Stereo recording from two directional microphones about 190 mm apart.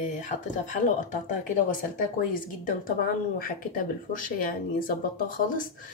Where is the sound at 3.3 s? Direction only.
50° left (ahead or behind).